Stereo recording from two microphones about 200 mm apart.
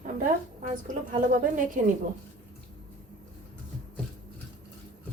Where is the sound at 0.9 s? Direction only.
40° right (ahead or behind).